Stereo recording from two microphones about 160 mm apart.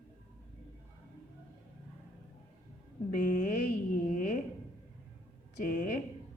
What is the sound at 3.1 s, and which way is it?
A woman's voice, 50° left (ahead or behind).